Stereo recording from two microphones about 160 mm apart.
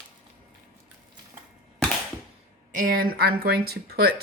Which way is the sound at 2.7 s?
60° right (ahead or behind).